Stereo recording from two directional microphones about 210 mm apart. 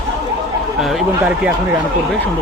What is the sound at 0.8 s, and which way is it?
Speech, centre (ahead or behind).